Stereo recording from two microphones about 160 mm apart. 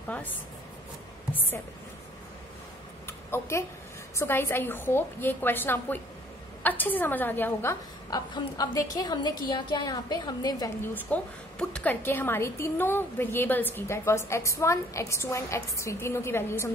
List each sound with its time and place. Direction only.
1.3 s speech: 10° left (ahead or behind)
3.1 s a sound: 15° left (ahead or behind)
4.2 s a woman's voice: 15° left (ahead or behind)
8.1 s a woman's voice: 25° left (ahead or behind)
10.8 s a woman's voice: 10° left (ahead or behind)